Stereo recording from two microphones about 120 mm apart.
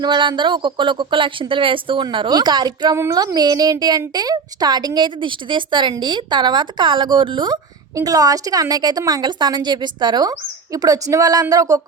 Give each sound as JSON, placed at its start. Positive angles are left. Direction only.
{"t": 0.0, "sound": "a woman's voice", "side_deg": -40}
{"t": 3.0, "sound": "a woman's voice", "side_deg": -25}